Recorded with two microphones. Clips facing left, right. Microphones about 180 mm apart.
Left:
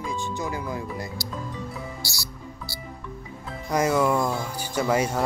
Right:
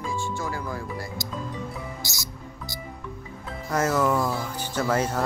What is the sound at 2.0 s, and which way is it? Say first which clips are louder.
Music: even; 20° right (ahead or behind).